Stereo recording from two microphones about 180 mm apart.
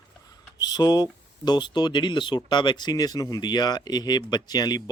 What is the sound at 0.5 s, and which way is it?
Speech, 20° left (ahead or behind).